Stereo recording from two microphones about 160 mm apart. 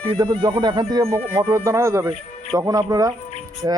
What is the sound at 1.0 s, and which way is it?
Speech, 40° right (ahead or behind).